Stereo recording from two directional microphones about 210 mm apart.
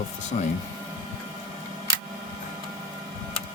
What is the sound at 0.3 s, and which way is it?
Speech, 40° left (ahead or behind).